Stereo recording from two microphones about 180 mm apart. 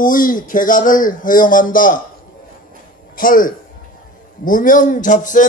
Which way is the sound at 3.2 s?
50° left (ahead or behind).